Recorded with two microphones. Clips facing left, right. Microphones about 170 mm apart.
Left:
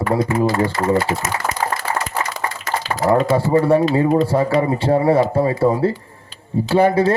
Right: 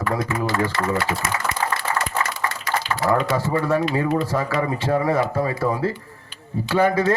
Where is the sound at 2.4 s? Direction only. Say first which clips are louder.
Left 1 dB; 40° left (ahead or behind).